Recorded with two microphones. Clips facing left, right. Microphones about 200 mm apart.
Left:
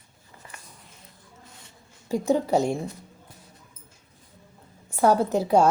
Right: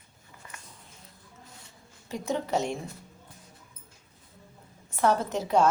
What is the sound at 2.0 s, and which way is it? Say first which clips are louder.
Speech: left 8 dB; 35° left (ahead or behind).